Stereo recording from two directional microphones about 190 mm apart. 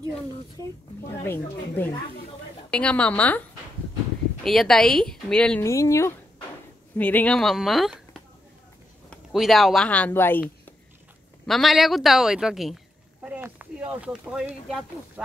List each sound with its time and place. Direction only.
0.6 s a woman's voice: 20° left (ahead or behind)
5.7 s a woman's voice: 15° left (ahead or behind); by 15.2 s centre (ahead or behind)